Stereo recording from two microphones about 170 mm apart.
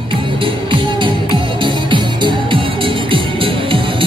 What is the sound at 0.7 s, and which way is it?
Music, 30° right (ahead or behind).